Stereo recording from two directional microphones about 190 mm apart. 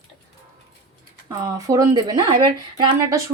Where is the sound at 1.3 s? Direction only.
20° right (ahead or behind).